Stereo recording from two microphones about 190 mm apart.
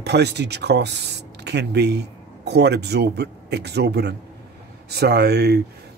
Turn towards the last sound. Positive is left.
turn(degrees=-60)  # may be behind; listen again after turning